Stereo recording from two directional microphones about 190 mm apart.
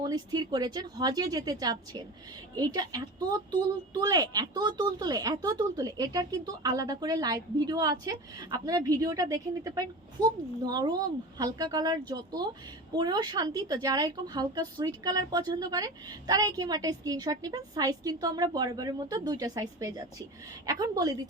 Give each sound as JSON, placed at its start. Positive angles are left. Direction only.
{"t": 0.0, "sound": "a woman's voice", "side_deg": -20}